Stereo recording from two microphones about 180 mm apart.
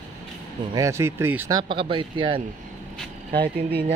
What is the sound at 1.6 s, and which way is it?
Speech, 30° right (ahead or behind).